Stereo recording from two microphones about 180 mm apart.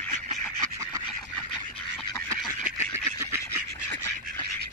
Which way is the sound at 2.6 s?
15° right (ahead or behind).